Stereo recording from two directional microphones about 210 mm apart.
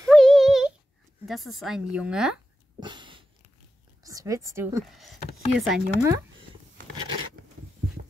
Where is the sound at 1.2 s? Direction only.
Centre (ahead or behind).